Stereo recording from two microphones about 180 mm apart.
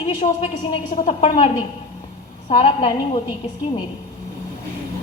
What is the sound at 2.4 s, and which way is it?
Speech, 30° left (ahead or behind).